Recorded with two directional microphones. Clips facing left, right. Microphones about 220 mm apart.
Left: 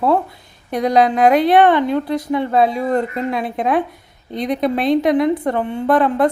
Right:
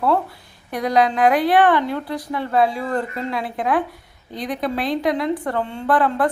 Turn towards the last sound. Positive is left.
turn(degrees=20)  # may be behind; listen again after turning